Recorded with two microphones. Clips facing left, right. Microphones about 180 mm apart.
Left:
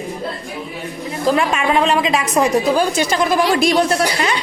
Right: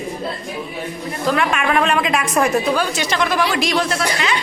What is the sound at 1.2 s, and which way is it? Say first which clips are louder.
A woman's voice: left 2 dB; 30° left (ahead or behind).